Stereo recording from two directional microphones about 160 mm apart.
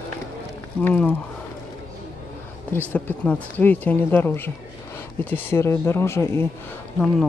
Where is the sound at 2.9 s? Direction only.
10° left (ahead or behind).